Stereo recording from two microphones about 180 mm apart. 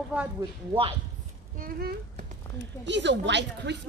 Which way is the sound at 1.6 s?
55° right (ahead or behind).